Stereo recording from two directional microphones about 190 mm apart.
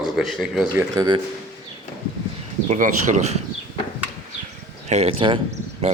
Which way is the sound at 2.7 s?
45° right (ahead or behind).